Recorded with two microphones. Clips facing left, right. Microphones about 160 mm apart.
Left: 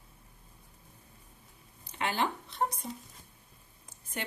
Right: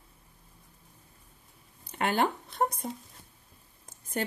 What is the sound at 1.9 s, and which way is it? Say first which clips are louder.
Speech: right 4 dB; 55° right (ahead or behind).